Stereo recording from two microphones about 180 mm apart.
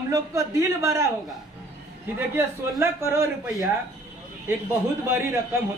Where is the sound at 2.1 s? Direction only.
15° right (ahead or behind).